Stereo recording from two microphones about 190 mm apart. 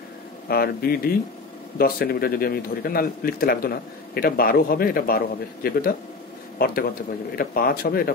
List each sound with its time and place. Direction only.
0.5 s a man's voice: 50° left (ahead or behind)